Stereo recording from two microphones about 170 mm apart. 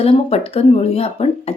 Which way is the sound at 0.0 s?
35° left (ahead or behind).